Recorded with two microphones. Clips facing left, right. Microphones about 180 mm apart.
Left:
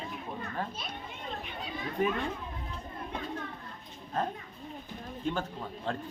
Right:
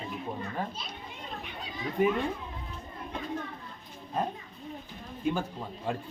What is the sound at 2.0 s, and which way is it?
Speech, 15° right (ahead or behind).